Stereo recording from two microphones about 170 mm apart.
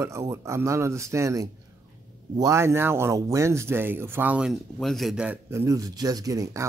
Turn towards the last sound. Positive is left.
turn(degrees=-20)  # may be behind; listen again after turning